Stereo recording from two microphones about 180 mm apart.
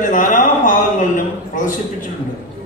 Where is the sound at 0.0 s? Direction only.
45° left (ahead or behind).